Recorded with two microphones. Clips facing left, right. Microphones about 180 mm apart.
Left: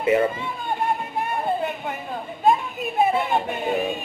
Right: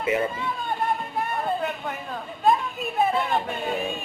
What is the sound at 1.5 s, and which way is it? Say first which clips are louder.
A man's voice: left 2 dB; 15° left (ahead or behind).